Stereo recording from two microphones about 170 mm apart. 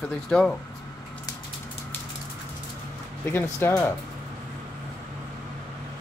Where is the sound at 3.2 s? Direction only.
15° left (ahead or behind).